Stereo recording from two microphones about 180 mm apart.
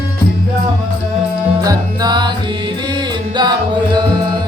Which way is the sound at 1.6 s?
20° right (ahead or behind).